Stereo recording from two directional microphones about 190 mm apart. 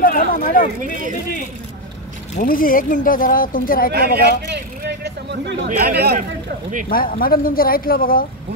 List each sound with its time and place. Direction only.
0.0 s a sound: 50° left (ahead or behind)
2.3 s speech: 45° left (ahead or behind)
3.9 s speech: 55° right (ahead or behind)
4.8 s a sound: 60° right (ahead or behind)
5.7 s speech: 55° right (ahead or behind)
6.9 s speech: 50° left (ahead or behind)